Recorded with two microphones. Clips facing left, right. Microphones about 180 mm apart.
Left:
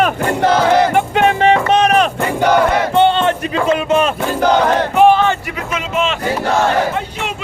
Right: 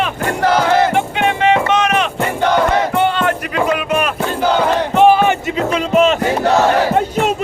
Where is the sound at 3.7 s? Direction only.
25° left (ahead or behind).